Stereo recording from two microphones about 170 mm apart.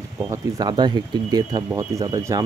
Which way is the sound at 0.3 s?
25° right (ahead or behind).